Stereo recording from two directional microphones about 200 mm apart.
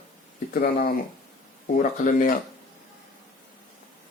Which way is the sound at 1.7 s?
40° left (ahead or behind).